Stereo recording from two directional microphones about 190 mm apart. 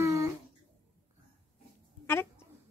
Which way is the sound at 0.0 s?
15° right (ahead or behind).